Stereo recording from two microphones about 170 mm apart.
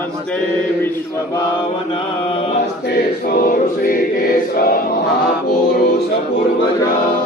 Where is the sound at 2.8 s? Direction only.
65° left (ahead or behind).